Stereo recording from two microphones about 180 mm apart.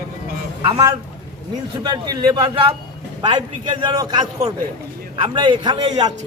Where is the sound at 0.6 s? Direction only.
25° right (ahead or behind).